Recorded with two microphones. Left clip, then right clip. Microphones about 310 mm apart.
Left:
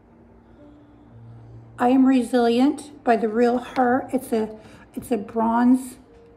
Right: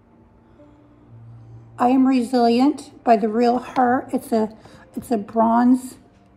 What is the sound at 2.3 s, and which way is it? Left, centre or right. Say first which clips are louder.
A woman's voice: right 2 dB; right.